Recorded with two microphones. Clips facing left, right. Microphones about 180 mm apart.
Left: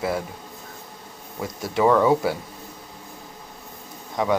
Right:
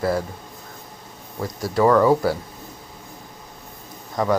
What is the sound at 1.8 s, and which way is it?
Speech, 5° left (ahead or behind).